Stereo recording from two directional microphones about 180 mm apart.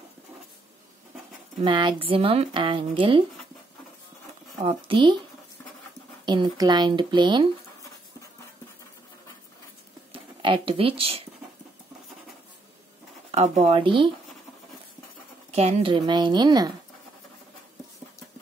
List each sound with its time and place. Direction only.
1.6 s speech: 25° right (ahead or behind)
4.6 s speech: 30° right (ahead or behind)
6.2 s speech: 25° right (ahead or behind)
10.1 s speech: 30° right (ahead or behind)
13.3 s speech: 35° right (ahead or behind)
15.5 s speech: 30° right (ahead or behind)